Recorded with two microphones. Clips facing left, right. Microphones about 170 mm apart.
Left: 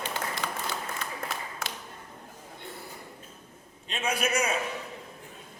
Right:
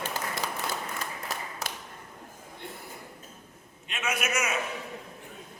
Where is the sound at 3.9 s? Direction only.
30° left (ahead or behind).